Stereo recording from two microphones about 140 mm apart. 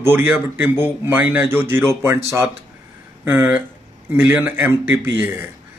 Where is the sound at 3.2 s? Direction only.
15° right (ahead or behind).